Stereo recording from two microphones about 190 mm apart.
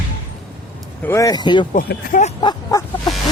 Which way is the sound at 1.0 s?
15° left (ahead or behind).